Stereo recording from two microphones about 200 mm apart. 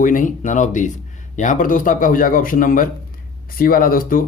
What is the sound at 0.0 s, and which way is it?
Speech, 40° left (ahead or behind).